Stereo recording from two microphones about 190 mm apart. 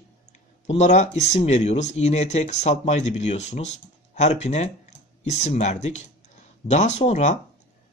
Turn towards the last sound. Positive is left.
turn(degrees=35)  # may be behind; listen again after turning